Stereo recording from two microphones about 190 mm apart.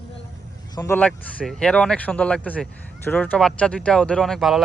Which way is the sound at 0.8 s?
10° left (ahead or behind).